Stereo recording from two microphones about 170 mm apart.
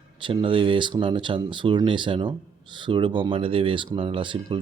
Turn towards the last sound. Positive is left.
turn(degrees=-30)  # may be behind; listen again after turning